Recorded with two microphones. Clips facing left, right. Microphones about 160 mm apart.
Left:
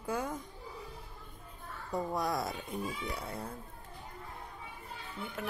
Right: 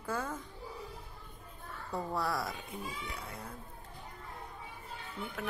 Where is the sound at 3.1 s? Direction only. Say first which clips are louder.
Left 4 dB; 30° left (ahead or behind).